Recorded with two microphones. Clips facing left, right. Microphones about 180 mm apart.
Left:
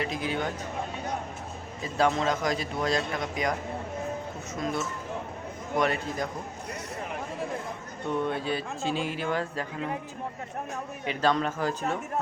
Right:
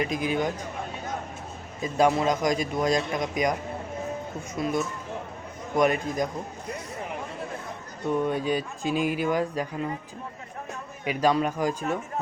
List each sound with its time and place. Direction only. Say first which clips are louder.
0.0 s a man's voice: right 4 dB; 15° right (ahead or behind)
1.8 s a man's voice: right 3 dB; 15° right (ahead or behind)
4.6 s a man's voice: right 3 dB; 10° right (ahead or behind)
5.7 s a man's voice: right 4 dB; 15° right (ahead or behind)
8.2 s a man's voice: right 3 dB; 15° right (ahead or behind)
11.0 s a man's voice: right 3 dB; 10° right (ahead or behind)